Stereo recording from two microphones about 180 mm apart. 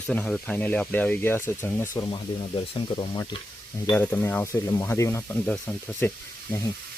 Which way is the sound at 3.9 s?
10° left (ahead or behind).